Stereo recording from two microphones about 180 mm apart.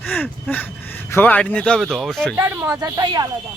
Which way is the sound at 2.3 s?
10° right (ahead or behind).